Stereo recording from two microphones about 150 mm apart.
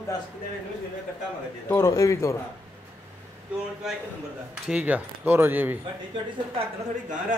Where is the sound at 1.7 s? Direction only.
20° left (ahead or behind).